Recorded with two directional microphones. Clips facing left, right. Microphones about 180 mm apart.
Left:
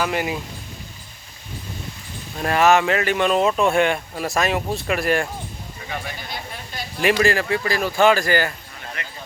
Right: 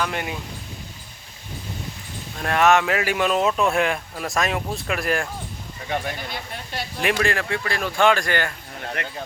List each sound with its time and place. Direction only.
0.0 s speech: 5° left (ahead or behind)
2.4 s speech: centre (ahead or behind)
7.0 s speech: centre (ahead or behind)
9.0 s speech: 65° right (ahead or behind)